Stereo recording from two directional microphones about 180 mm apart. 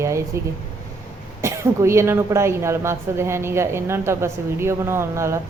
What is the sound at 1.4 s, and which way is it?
A woman's voice, 15° right (ahead or behind).